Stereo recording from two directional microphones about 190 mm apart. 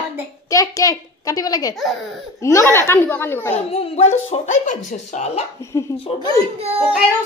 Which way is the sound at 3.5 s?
30° left (ahead or behind).